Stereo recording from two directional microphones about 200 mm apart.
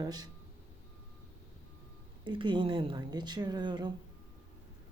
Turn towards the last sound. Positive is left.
turn(degrees=-20)  # may be behind; listen again after turning